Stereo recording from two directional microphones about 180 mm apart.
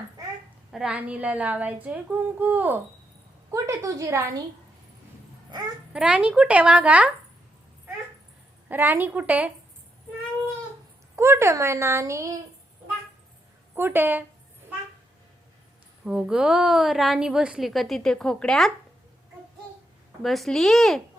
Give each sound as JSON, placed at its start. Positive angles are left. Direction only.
{"t": 0.7, "sound": "speech", "side_deg": -5}
{"t": 5.5, "sound": "a child's voice", "side_deg": -25}
{"t": 5.9, "sound": "speech", "side_deg": -5}
{"t": 8.7, "sound": "speech", "side_deg": -10}
{"t": 11.2, "sound": "speech", "side_deg": -15}
{"t": 13.7, "sound": "speech", "side_deg": -10}
{"t": 16.0, "sound": "a woman's voice", "side_deg": -5}
{"t": 20.2, "sound": "a woman's voice", "side_deg": 0}